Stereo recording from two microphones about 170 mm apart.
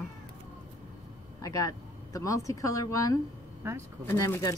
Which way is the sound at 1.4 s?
20° left (ahead or behind).